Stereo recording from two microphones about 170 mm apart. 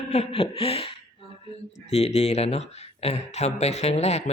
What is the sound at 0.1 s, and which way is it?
Speech, 35° left (ahead or behind).